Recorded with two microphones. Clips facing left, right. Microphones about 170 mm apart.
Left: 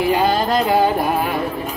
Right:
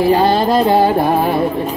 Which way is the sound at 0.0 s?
35° right (ahead or behind).